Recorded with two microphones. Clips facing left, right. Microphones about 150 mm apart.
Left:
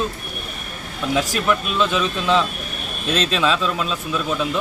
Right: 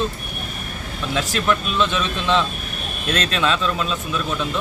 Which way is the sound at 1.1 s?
10° left (ahead or behind).